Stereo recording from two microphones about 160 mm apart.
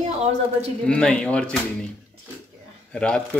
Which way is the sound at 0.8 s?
5° left (ahead or behind).